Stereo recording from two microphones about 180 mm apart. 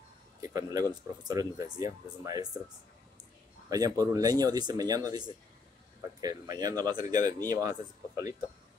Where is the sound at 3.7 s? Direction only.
20° right (ahead or behind).